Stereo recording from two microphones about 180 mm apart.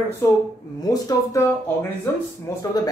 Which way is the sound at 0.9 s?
20° left (ahead or behind).